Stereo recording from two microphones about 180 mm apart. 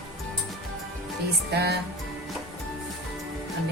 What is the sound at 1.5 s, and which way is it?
Music, 65° right (ahead or behind).